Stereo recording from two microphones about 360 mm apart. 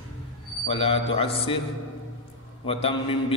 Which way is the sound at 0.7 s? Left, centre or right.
Centre.